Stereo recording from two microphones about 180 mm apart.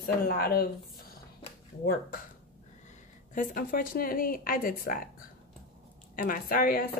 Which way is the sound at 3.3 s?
50° left (ahead or behind).